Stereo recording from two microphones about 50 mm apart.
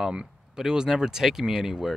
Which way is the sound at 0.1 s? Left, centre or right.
Centre.